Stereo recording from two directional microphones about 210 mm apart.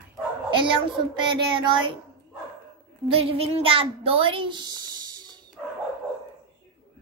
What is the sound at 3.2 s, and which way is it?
A child's voice, 30° right (ahead or behind).